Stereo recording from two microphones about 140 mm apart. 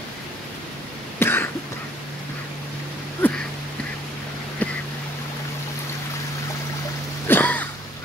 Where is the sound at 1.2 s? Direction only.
15° left (ahead or behind).